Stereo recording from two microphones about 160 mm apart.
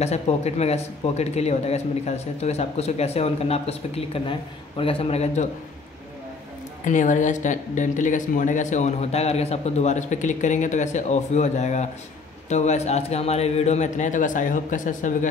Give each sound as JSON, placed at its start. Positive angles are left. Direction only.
{"t": 0.0, "sound": "speech", "side_deg": 45}
{"t": 6.8, "sound": "speech", "side_deg": 50}